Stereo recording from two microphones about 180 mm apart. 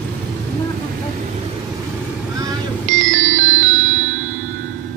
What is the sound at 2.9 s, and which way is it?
Music, 40° right (ahead or behind).